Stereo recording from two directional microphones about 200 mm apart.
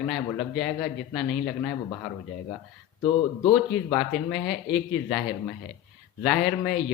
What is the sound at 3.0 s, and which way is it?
Speech, 20° left (ahead or behind).